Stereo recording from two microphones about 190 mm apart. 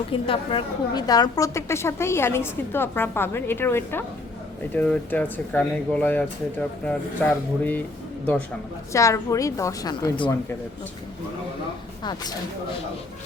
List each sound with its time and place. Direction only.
0.1 s a woman's voice: 30° left (ahead or behind); by 7.9 s 10° left (ahead or behind)
8.9 s a woman's voice: 15° left (ahead or behind)